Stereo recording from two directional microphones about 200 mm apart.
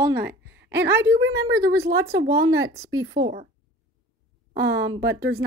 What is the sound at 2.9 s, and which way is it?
Speech, 70° right (ahead or behind).